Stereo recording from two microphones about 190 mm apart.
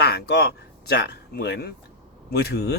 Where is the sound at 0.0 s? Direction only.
60° left (ahead or behind).